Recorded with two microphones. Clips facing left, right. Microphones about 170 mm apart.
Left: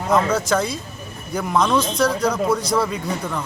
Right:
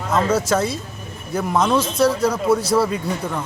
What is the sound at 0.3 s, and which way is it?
A man's voice, 5° right (ahead or behind).